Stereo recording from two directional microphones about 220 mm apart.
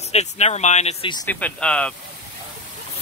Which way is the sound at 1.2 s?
5° left (ahead or behind).